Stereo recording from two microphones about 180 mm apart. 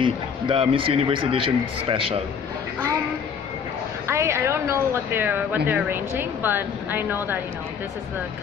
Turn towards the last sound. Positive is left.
turn(degrees=-10)  # may be behind; listen again after turning